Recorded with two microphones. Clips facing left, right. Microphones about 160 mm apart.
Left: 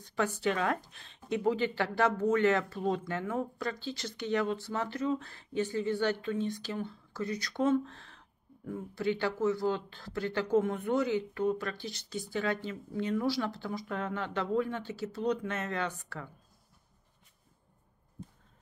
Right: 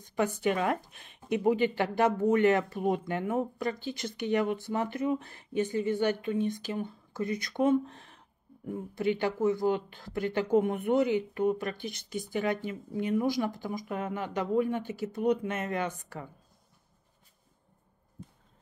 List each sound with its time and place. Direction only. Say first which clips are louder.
0.1 s speech: right 3 dB; 15° right (ahead or behind)